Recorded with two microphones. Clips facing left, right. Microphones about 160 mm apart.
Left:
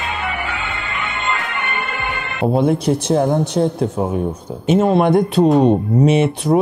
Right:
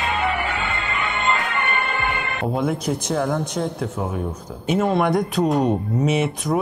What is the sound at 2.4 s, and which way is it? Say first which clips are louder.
Speech: left 8 dB; 30° left (ahead or behind).